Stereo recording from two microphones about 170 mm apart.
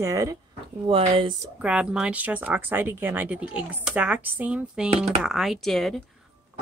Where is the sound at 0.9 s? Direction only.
30° right (ahead or behind).